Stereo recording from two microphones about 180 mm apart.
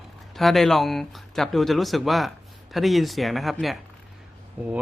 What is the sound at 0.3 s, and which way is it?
Speech, centre (ahead or behind).